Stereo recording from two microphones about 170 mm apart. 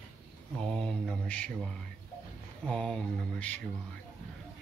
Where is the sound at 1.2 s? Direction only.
5° left (ahead or behind).